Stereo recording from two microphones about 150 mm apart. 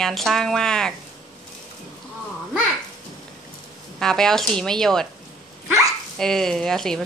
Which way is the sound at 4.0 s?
5° left (ahead or behind).